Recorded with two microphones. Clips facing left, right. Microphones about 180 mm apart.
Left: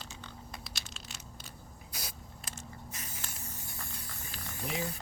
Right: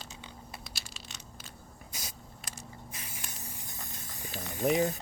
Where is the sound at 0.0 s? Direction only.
10° right (ahead or behind).